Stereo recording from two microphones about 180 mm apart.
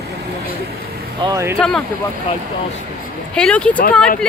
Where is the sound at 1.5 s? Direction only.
5° left (ahead or behind).